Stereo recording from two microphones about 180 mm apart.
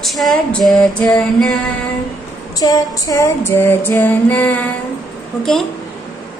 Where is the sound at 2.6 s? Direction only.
20° left (ahead or behind).